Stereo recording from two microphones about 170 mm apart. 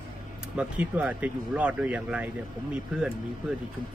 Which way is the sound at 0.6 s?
5° right (ahead or behind).